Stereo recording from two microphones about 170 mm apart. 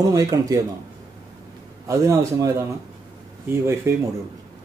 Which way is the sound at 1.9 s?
15° right (ahead or behind).